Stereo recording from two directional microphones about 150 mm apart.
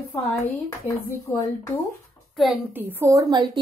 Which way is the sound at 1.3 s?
25° left (ahead or behind).